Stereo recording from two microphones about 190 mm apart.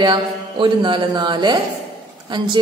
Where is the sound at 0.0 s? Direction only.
25° right (ahead or behind).